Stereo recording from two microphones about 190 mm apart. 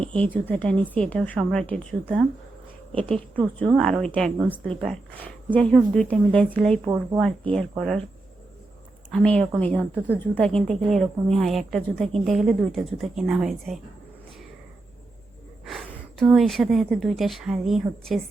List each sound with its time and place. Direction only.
0.1 s a woman's voice: 5° left (ahead or behind)
6.8 s speech: 15° right (ahead or behind)
7.5 s a woman's voice: centre (ahead or behind)
9.1 s a woman's voice: 5° left (ahead or behind)
15.6 s speech: centre (ahead or behind)